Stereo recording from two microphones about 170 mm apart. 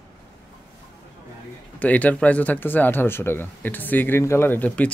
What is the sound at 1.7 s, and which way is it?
Speech, 10° left (ahead or behind).